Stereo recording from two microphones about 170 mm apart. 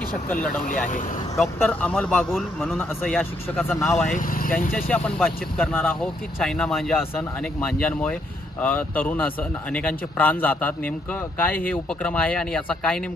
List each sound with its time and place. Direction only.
0.3 s speech: 5° left (ahead or behind)
4.1 s speech: 55° left (ahead or behind)
4.7 s speech: 5° left (ahead or behind)